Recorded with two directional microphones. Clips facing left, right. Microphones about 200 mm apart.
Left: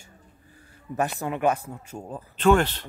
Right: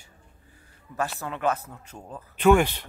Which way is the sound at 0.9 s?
15° left (ahead or behind).